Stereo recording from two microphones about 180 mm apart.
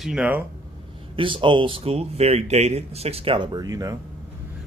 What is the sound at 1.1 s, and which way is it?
Speech, 30° right (ahead or behind).